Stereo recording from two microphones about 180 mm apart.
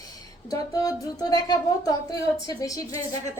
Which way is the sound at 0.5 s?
20° left (ahead or behind).